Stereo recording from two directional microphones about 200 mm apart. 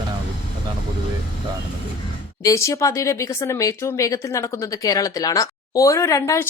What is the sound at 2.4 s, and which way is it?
Speech, 15° left (ahead or behind).